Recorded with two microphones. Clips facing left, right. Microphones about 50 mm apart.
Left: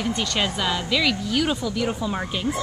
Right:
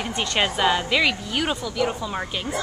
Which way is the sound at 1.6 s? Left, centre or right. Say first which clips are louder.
Even; centre.